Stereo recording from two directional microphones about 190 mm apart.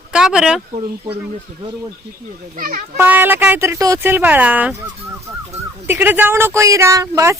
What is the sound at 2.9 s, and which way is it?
Speech, 10° right (ahead or behind).